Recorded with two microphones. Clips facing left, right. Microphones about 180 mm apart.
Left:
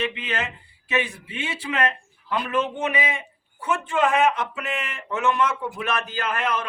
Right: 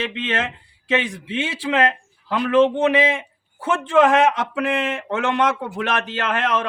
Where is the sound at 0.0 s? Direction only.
90° right.